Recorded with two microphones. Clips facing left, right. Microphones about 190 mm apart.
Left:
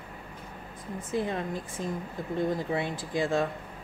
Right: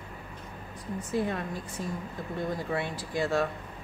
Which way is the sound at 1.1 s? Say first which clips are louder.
Left 1 dB; 20° left (ahead or behind).